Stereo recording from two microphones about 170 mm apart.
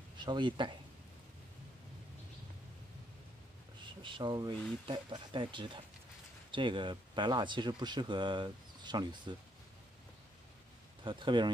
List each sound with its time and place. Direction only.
0.2 s speech: 25° right (ahead or behind)
3.8 s speech: 30° right (ahead or behind)
11.1 s speech: 30° right (ahead or behind)